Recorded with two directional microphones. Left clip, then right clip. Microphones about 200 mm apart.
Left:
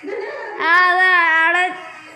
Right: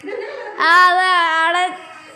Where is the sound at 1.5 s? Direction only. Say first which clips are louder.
Left 1 dB; 10° right (ahead or behind).